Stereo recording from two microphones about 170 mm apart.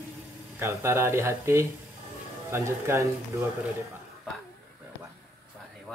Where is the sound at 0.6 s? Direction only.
15° right (ahead or behind).